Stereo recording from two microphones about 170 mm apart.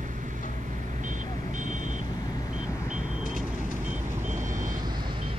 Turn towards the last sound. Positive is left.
turn(degrees=-50)  # may be behind; listen again after turning